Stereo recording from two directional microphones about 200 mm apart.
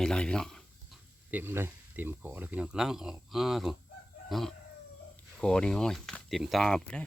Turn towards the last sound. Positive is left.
turn(degrees=5)  # may be behind; listen again after turning